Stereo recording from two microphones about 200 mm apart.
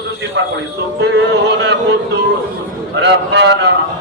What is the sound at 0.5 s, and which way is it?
A man's voice, 60° right (ahead or behind).